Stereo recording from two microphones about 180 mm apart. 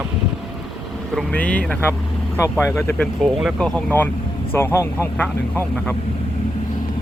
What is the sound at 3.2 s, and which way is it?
Speech, centre (ahead or behind).